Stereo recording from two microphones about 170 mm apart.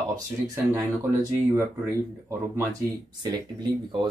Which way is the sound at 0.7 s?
15° right (ahead or behind).